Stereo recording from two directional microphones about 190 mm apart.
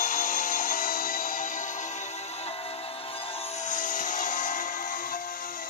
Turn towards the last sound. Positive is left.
turn(degrees=45)  # may be behind; listen again after turning